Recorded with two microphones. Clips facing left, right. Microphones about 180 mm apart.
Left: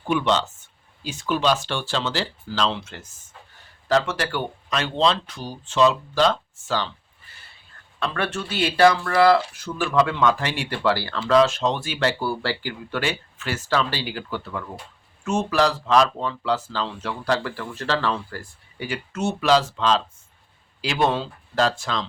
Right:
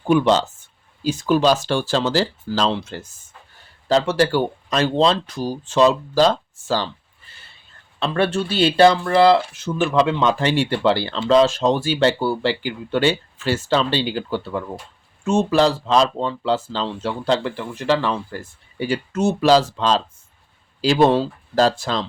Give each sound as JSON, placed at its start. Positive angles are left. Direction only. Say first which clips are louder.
{"t": 0.1, "sound": "speech", "louder": "right 6 dB", "side_deg": -40}
{"t": 7.9, "sound": "speech", "louder": "right 6 dB", "side_deg": -25}